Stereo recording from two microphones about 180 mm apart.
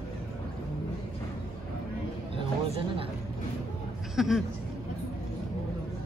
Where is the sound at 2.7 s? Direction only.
30° right (ahead or behind).